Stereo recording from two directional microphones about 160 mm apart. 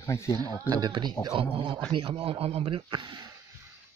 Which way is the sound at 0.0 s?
15° left (ahead or behind).